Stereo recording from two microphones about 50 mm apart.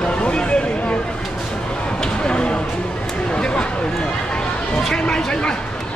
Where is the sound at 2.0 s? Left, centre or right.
Centre.